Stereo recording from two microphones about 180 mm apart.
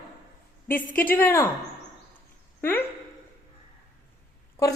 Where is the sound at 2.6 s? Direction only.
10° left (ahead or behind).